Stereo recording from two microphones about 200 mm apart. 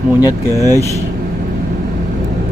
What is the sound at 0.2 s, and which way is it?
Speech, 15° left (ahead or behind).